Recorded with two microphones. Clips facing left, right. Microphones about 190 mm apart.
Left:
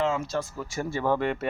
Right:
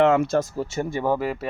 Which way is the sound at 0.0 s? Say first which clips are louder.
Right 9 dB; 65° right (ahead or behind).